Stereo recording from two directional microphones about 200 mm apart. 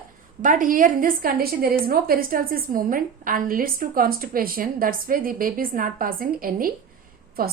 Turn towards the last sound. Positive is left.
turn(degrees=-45)  # may be behind; listen again after turning